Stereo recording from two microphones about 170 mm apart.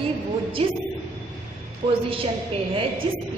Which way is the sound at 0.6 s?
35° right (ahead or behind).